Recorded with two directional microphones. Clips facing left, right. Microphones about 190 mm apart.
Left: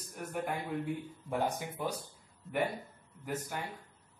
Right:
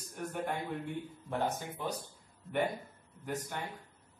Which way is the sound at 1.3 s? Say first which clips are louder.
Left 1 dB; 10° left (ahead or behind).